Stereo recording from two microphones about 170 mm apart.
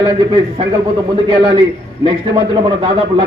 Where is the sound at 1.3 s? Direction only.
30° right (ahead or behind).